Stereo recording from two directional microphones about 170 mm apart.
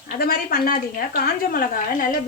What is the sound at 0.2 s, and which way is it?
A woman's voice, 60° left (ahead or behind).